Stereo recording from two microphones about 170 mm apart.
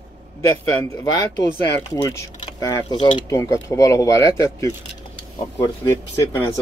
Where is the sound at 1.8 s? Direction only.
15° left (ahead or behind).